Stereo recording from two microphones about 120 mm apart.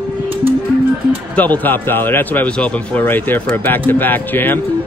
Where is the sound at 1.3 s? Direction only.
15° left (ahead or behind).